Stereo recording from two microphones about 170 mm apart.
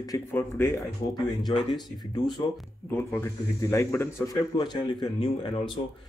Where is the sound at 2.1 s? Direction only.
25° left (ahead or behind).